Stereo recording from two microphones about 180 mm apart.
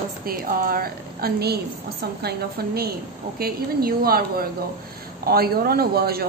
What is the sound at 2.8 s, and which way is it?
A woman's voice, 55° right (ahead or behind).